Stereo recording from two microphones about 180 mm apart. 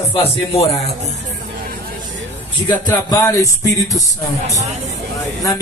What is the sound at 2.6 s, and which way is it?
Speech, 20° left (ahead or behind).